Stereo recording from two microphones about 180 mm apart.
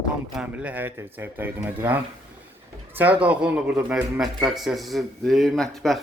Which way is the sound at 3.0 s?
10° right (ahead or behind).